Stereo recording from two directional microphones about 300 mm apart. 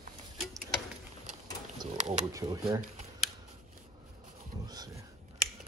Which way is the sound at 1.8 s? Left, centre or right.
Right.